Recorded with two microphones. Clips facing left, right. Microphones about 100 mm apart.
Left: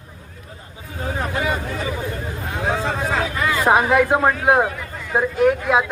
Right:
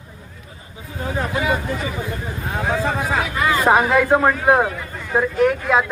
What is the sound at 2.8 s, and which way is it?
Speech, 5° right (ahead or behind).